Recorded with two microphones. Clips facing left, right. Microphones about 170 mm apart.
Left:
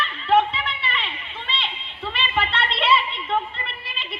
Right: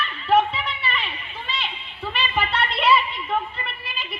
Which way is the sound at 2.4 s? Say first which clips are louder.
Right 1 dB; 25° left (ahead or behind).